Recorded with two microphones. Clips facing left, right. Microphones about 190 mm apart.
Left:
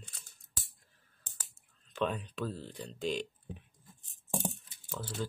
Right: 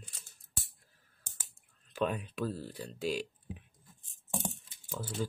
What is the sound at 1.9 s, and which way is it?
Speech, 10° right (ahead or behind).